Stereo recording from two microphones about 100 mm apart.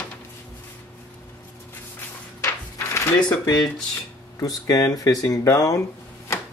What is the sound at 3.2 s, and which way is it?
Speech, 45° left (ahead or behind).